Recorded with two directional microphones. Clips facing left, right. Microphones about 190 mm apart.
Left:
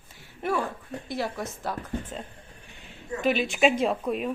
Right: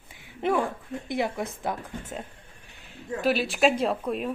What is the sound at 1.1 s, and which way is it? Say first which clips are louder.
Speech: right 3 dB; 20° right (ahead or behind).